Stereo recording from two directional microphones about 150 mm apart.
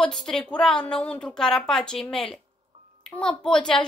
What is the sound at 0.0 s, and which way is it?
Music, 5° left (ahead or behind).